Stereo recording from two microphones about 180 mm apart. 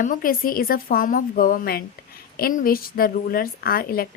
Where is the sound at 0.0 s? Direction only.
50° left (ahead or behind).